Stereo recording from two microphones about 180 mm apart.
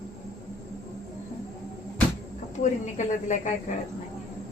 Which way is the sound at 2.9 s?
40° left (ahead or behind).